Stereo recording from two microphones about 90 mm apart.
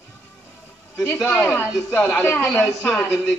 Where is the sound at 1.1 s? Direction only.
30° left (ahead or behind).